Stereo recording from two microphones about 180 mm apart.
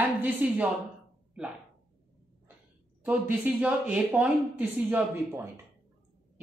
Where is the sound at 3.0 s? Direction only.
10° right (ahead or behind).